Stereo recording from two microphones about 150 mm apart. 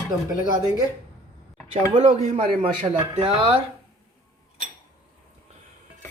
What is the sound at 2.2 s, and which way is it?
Speech, 50° right (ahead or behind).